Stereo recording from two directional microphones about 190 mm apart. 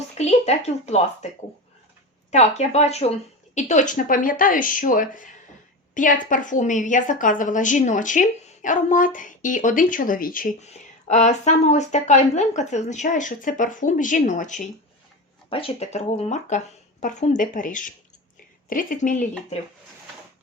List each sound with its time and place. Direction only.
0.2 s a woman's voice: 35° left (ahead or behind)
2.3 s a woman's voice: 35° left (ahead or behind)
15.4 s a woman's voice: 30° left (ahead or behind); by 19.2 s 45° left (ahead or behind)